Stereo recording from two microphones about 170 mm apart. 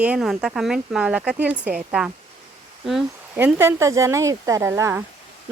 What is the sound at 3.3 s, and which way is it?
Speech, 15° right (ahead or behind).